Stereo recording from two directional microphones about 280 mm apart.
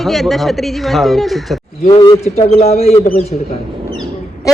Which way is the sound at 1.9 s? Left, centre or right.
Centre.